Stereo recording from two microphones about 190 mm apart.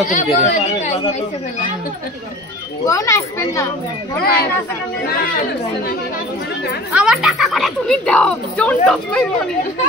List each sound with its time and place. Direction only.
0.1 s speech: 40° left (ahead or behind)
2.9 s speech: 15° left (ahead or behind)
4.2 s speech: 55° left (ahead or behind)
6.9 s speech: 5° right (ahead or behind)